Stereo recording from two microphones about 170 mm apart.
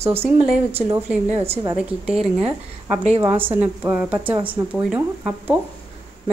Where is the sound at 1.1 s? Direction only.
10° right (ahead or behind).